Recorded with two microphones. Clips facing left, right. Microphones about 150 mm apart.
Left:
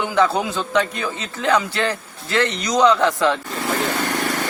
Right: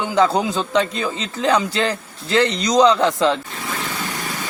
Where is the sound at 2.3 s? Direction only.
30° right (ahead or behind).